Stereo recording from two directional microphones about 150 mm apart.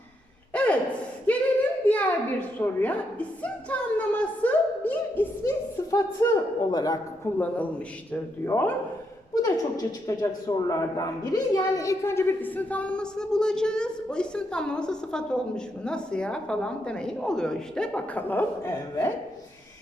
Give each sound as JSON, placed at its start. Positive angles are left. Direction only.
{"t": 0.5, "sound": "a sound", "side_deg": 10}
{"t": 2.6, "sound": "speech", "side_deg": 10}
{"t": 5.4, "sound": "speech", "side_deg": 20}
{"t": 7.3, "sound": "speech", "side_deg": 10}